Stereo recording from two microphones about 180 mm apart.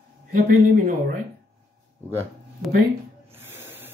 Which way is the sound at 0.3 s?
50° right (ahead or behind).